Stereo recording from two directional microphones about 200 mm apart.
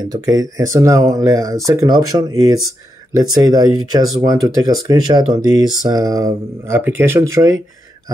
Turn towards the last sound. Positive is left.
turn(degrees=-15)  # may be behind; listen again after turning